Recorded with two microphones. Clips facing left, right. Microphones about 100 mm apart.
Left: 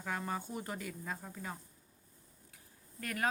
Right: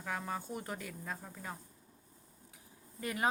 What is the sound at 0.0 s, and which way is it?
Speech, centre (ahead or behind).